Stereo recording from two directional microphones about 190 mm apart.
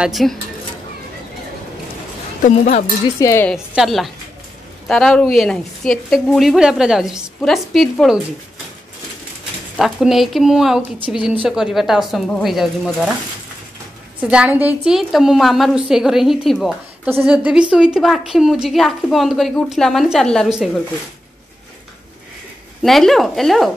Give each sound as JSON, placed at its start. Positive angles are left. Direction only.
{"t": 0.0, "sound": "a woman's voice", "side_deg": 0}
{"t": 2.4, "sound": "speech", "side_deg": 35}
{"t": 3.2, "sound": "a woman's voice", "side_deg": 15}
{"t": 3.4, "sound": "a woman's voice", "side_deg": 0}
{"t": 9.8, "sound": "a woman's voice", "side_deg": 0}
{"t": 14.2, "sound": "a woman's voice", "side_deg": -5}
{"t": 22.8, "sound": "a woman's voice", "side_deg": 0}